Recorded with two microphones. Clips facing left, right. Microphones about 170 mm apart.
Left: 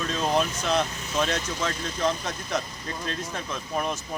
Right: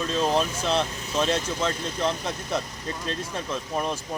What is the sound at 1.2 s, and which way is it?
Speech, 30° right (ahead or behind).